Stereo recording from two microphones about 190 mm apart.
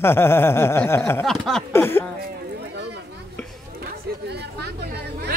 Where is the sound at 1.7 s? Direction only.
10° left (ahead or behind).